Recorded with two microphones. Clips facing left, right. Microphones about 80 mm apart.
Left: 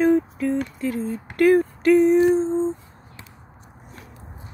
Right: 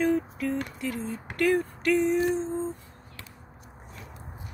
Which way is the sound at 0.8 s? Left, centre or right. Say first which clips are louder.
Left 7 dB; left.